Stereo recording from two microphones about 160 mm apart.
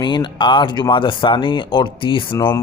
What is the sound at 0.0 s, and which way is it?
A man's voice, 30° left (ahead or behind).